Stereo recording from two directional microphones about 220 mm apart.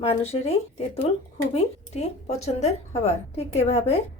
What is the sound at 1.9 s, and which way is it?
Speech, 30° left (ahead or behind).